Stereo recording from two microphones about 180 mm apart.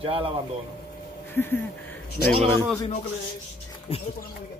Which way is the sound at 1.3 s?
10° left (ahead or behind).